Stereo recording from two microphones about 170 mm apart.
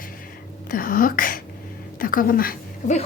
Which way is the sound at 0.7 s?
55° left (ahead or behind).